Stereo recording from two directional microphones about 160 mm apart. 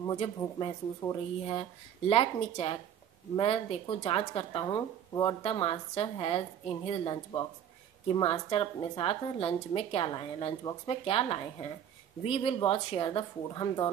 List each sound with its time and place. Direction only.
0.0 s a woman's voice: 30° left (ahead or behind)